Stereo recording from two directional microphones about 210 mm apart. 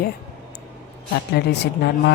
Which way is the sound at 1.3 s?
55° left (ahead or behind).